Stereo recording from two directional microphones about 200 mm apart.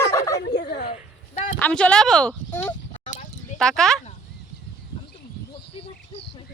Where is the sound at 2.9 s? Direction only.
40° left (ahead or behind).